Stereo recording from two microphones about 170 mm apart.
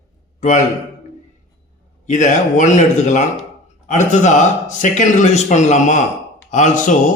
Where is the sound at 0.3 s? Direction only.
45° left (ahead or behind).